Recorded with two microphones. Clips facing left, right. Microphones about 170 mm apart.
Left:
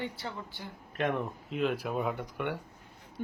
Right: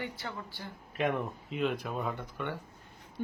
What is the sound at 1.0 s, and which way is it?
A woman's voice, centre (ahead or behind).